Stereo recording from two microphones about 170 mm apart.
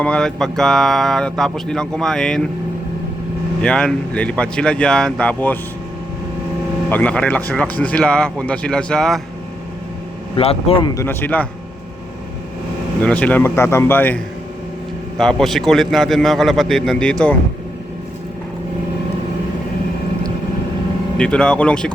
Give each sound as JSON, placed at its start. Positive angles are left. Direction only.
{"t": 0.0, "sound": "speech", "side_deg": 5}
{"t": 3.6, "sound": "speech", "side_deg": 5}
{"t": 6.9, "sound": "speech", "side_deg": 5}
{"t": 10.3, "sound": "a man's voice", "side_deg": 35}
{"t": 10.9, "sound": "speech", "side_deg": 15}
{"t": 13.0, "sound": "speech", "side_deg": 10}
{"t": 15.2, "sound": "speech", "side_deg": 0}
{"t": 21.2, "sound": "speech", "side_deg": 5}